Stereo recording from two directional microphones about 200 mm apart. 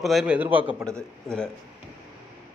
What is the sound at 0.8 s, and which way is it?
Speech, 5° left (ahead or behind).